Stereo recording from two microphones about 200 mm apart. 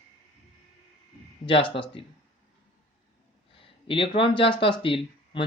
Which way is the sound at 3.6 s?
25° left (ahead or behind).